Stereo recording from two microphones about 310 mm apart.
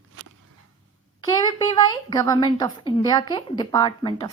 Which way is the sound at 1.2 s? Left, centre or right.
Centre.